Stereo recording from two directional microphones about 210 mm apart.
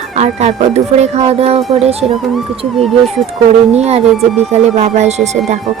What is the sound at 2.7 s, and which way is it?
Speech, centre (ahead or behind).